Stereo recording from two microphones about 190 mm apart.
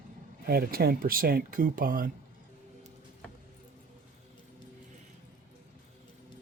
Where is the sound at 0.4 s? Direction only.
55° right (ahead or behind).